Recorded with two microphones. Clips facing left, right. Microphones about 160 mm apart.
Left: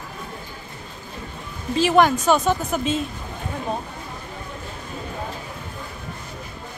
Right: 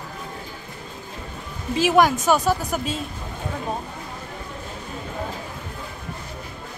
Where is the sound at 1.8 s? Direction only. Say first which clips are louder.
Left 1 dB; 10° right (ahead or behind).